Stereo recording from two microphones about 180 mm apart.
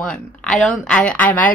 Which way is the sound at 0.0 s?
5° left (ahead or behind).